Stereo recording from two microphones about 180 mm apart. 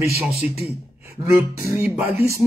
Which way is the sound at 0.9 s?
10° right (ahead or behind).